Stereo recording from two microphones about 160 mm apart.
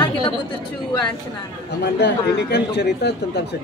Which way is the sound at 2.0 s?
90° left.